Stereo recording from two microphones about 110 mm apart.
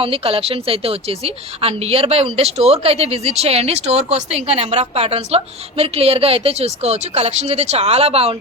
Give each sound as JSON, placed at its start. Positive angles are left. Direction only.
{"t": 0.0, "sound": "a woman's voice", "side_deg": -55}